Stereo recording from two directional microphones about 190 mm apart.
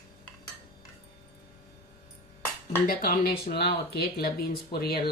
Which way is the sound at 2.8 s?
50° left (ahead or behind).